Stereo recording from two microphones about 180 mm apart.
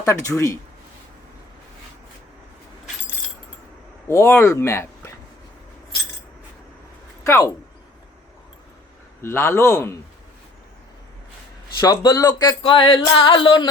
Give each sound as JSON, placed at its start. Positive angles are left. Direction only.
{"t": 0.3, "sound": "speech", "side_deg": 15}
{"t": 4.1, "sound": "speech", "side_deg": 15}
{"t": 7.3, "sound": "speech", "side_deg": 15}
{"t": 9.2, "sound": "speech", "side_deg": 15}
{"t": 11.8, "sound": "speech", "side_deg": 20}